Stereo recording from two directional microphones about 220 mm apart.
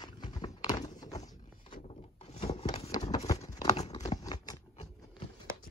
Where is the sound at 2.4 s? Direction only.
25° left (ahead or behind).